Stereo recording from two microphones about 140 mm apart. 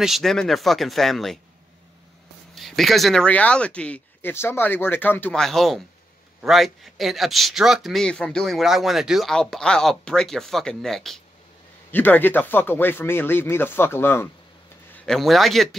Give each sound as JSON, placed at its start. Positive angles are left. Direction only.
{"t": 0.0, "sound": "speech", "side_deg": 0}
{"t": 2.5, "sound": "speech", "side_deg": 0}
{"t": 5.4, "sound": "speech", "side_deg": 0}
{"t": 11.9, "sound": "speech", "side_deg": 15}
{"t": 15.0, "sound": "speech", "side_deg": 0}